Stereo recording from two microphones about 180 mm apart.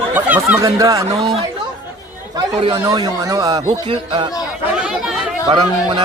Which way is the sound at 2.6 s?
20° right (ahead or behind).